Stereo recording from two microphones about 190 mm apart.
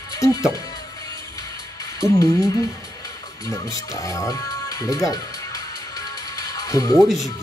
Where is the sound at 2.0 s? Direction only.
15° left (ahead or behind).